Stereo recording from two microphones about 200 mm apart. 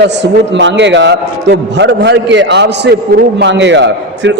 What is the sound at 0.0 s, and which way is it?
A man's voice, 60° right (ahead or behind).